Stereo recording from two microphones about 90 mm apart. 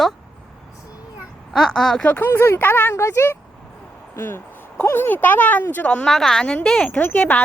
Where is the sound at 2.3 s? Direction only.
25° left (ahead or behind).